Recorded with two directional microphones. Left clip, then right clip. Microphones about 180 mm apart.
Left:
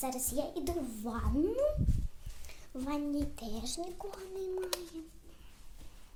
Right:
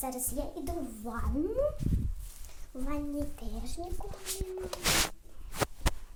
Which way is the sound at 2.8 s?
15° left (ahead or behind).